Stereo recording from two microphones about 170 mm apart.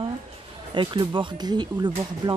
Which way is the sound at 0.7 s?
30° right (ahead or behind).